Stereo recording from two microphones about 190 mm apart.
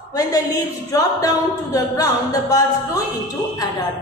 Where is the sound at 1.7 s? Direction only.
20° left (ahead or behind).